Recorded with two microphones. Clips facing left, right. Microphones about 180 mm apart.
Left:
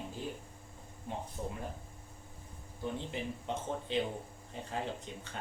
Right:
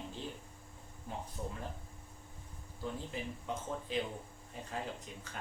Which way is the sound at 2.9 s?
30° left (ahead or behind).